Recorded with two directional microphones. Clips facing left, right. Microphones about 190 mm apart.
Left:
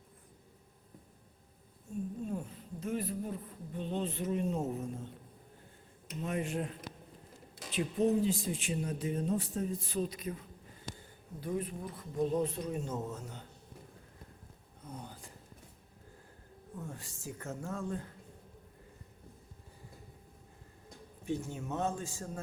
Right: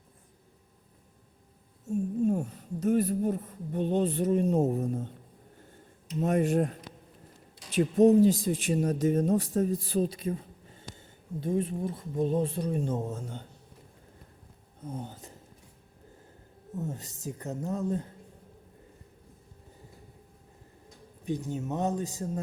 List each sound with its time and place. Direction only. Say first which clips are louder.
1.9 s speech: right 11 dB; 45° right (ahead or behind)
6.1 s speech: right 10 dB; 45° right (ahead or behind)
7.8 s speech: right 10 dB; 45° right (ahead or behind); by 13.4 s 30° right (ahead or behind)
14.8 s speech: right 8 dB; 25° right (ahead or behind)
16.7 s speech: right 8 dB; 20° right (ahead or behind)
21.2 s speech: right 5 dB; 15° right (ahead or behind)